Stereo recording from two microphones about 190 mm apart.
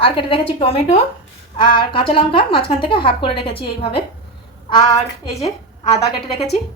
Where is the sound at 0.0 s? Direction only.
30° left (ahead or behind).